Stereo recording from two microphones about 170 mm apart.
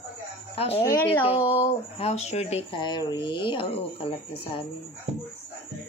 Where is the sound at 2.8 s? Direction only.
25° left (ahead or behind).